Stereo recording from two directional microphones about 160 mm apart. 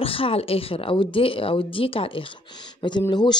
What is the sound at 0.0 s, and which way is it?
Speech, 35° left (ahead or behind).